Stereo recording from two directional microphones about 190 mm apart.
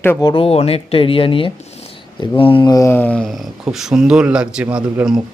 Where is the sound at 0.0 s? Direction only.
15° left (ahead or behind).